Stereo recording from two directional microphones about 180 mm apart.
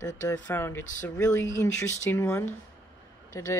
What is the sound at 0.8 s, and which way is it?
Speech, 45° left (ahead or behind).